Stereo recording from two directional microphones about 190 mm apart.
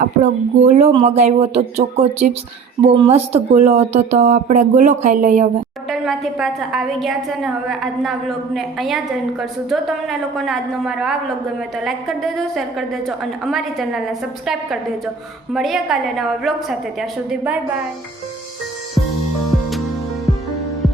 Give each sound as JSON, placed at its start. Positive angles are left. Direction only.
{"t": 0.0, "sound": "a woman's voice", "side_deg": -40}
{"t": 5.9, "sound": "a woman's voice", "side_deg": 0}